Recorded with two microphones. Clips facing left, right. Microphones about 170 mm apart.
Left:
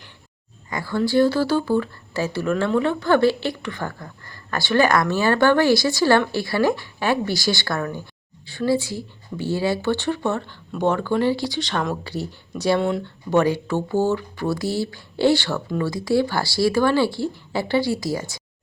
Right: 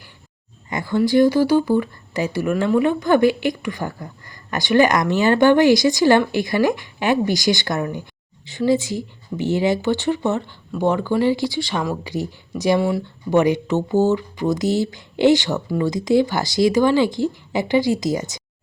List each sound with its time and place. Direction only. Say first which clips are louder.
0.7 s speech: right 3 dB; 20° right (ahead or behind)